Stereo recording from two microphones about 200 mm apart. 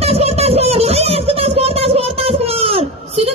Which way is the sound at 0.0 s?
30° right (ahead or behind).